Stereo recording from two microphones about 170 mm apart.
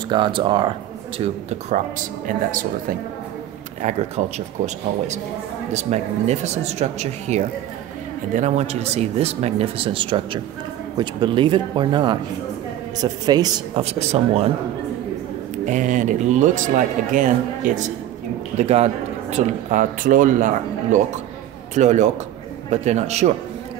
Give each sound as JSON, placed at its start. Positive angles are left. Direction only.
{"t": 0.1, "sound": "speech", "side_deg": -30}
{"t": 2.2, "sound": "speech", "side_deg": -55}
{"t": 5.7, "sound": "speech", "side_deg": -40}
{"t": 13.8, "sound": "speech", "side_deg": -35}
{"t": 15.6, "sound": "speech", "side_deg": -45}
{"t": 18.6, "sound": "speech", "side_deg": -40}